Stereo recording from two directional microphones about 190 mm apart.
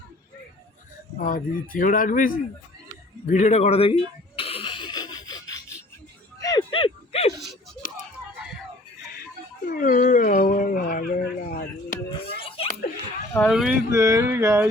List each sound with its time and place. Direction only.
1.2 s speech: 45° left (ahead or behind)
3.2 s a sound: 40° left (ahead or behind)
9.6 s dog: 45° left (ahead or behind)
12.1 s a sound: 30° left (ahead or behind)
13.5 s speech: centre (ahead or behind)
13.9 s speech: 15° right (ahead or behind)